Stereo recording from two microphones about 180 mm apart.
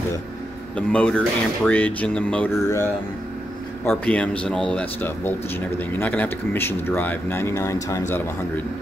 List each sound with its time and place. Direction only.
0.7 s speech: 5° left (ahead or behind)